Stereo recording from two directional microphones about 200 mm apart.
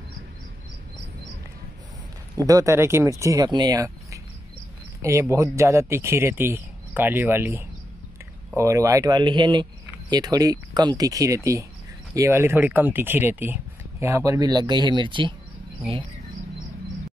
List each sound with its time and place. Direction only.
2.3 s speech: 15° right (ahead or behind)
5.3 s speech: 15° right (ahead or behind)